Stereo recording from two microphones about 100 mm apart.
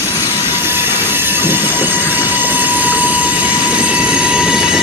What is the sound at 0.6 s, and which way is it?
Train, 20° right (ahead or behind).